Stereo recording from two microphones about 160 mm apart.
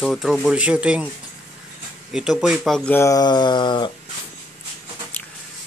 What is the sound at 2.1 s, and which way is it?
Speech, 5° right (ahead or behind).